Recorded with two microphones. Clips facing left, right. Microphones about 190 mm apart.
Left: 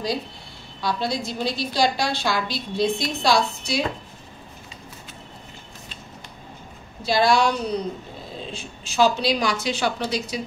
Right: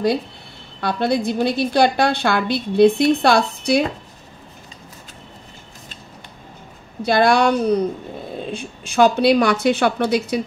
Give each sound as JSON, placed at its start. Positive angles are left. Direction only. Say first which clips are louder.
{"t": 0.7, "sound": "a woman's voice", "louder": "right 6 dB", "side_deg": -60}
{"t": 7.0, "sound": "a woman's voice", "louder": "right 4 dB", "side_deg": -55}